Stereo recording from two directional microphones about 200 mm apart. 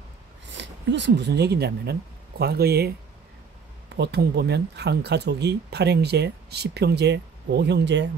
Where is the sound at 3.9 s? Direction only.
55° right (ahead or behind).